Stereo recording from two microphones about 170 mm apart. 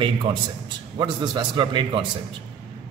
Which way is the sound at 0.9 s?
25° right (ahead or behind).